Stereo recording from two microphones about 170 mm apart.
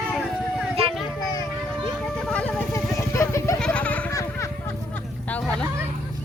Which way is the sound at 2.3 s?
10° left (ahead or behind).